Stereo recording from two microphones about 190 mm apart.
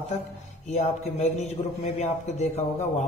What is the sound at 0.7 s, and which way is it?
A man's voice, 35° left (ahead or behind).